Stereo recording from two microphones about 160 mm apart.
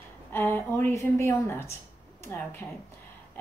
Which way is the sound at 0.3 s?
15° left (ahead or behind).